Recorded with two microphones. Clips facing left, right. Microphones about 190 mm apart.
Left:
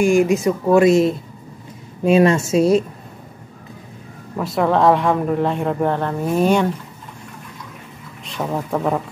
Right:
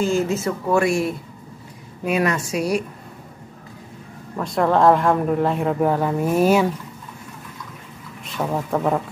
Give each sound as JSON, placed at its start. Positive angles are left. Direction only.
{"t": 0.0, "sound": "a woman's voice", "side_deg": 15}
{"t": 4.4, "sound": "speech", "side_deg": 0}
{"t": 8.3, "sound": "speech", "side_deg": 0}